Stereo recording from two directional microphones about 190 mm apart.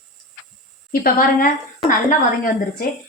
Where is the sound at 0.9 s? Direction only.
50° left (ahead or behind).